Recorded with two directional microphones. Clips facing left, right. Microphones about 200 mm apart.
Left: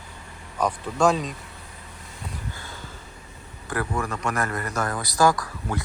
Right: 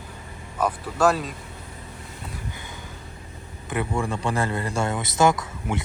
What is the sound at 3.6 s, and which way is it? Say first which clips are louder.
Speech: right 2 dB; 20° right (ahead or behind).